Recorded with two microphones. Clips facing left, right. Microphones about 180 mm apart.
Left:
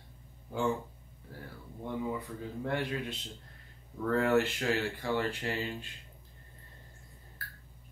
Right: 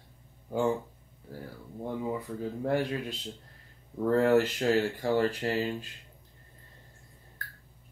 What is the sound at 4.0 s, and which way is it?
Speech, 35° right (ahead or behind).